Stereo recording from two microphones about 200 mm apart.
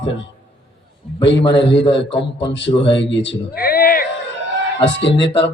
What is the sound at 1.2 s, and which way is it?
Speech, 60° left (ahead or behind).